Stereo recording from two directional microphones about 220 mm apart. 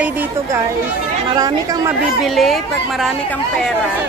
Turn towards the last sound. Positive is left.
turn(degrees=0)  # may be behind; listen again after turning